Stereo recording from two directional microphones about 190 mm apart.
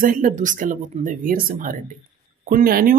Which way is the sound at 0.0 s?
45° right (ahead or behind).